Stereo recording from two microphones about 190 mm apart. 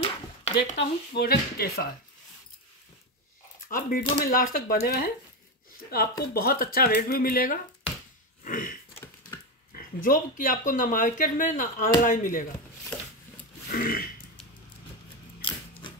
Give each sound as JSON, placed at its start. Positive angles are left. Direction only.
{"t": 0.7, "sound": "speech", "side_deg": 60}
{"t": 3.6, "sound": "speech", "side_deg": 50}
{"t": 10.0, "sound": "speech", "side_deg": 45}
{"t": 13.7, "sound": "a sound", "side_deg": 50}